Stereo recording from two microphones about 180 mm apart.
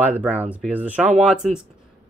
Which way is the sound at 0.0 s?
10° right (ahead or behind).